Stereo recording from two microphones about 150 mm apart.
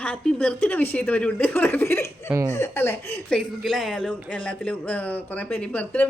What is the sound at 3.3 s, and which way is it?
Speech, centre (ahead or behind).